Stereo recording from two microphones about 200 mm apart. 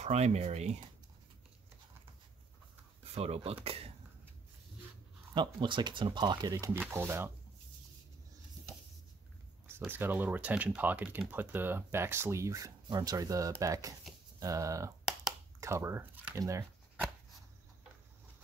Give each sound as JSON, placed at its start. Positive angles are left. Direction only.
{"t": 0.0, "sound": "speech", "side_deg": -35}
{"t": 3.2, "sound": "speech", "side_deg": -30}
{"t": 5.3, "sound": "speech", "side_deg": -25}
{"t": 9.8, "sound": "speech", "side_deg": -10}